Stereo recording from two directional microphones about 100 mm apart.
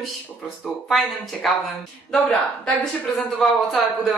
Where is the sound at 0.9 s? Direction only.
Centre (ahead or behind).